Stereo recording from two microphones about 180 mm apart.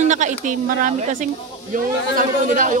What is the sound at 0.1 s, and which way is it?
Speech, 45° right (ahead or behind).